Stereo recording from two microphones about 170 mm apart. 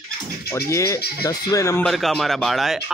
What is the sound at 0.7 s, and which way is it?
Speech, 15° left (ahead or behind).